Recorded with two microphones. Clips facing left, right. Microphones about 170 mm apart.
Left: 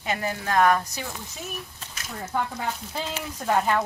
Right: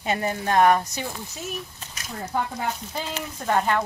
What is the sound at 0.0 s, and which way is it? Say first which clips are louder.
Speech: right 3 dB; 30° right (ahead or behind).